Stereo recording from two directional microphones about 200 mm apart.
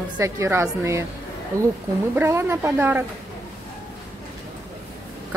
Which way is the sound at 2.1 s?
10° right (ahead or behind).